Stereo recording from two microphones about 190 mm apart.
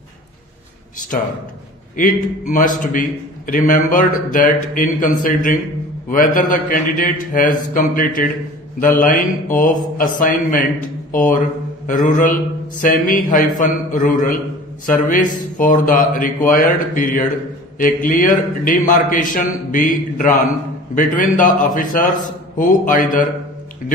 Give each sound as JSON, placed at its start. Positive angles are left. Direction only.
{"t": 2.0, "sound": "a man's voice", "side_deg": 45}